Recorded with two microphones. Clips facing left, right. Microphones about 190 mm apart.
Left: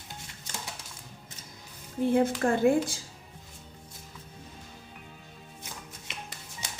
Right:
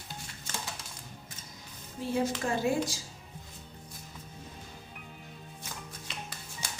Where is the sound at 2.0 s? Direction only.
55° left (ahead or behind).